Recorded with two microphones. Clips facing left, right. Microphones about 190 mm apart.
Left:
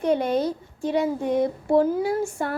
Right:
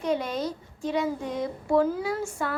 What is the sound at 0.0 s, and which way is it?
A woman's voice, 55° left (ahead or behind).